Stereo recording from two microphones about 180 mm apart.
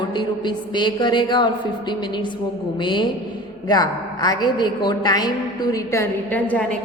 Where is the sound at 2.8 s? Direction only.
25° left (ahead or behind).